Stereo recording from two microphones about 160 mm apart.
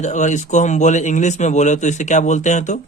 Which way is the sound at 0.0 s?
50° left (ahead or behind).